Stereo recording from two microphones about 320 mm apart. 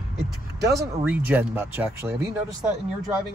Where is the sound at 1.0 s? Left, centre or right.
Centre.